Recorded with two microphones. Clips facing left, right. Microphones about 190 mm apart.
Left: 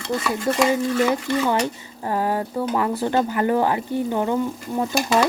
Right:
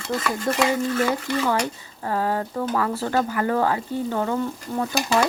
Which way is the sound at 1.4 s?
10° left (ahead or behind).